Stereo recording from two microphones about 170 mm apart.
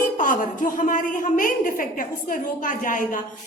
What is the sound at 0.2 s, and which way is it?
A woman's voice, 50° left (ahead or behind).